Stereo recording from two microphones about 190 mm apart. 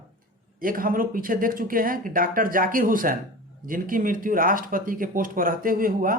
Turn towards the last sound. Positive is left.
turn(degrees=-45)  # may be behind; listen again after turning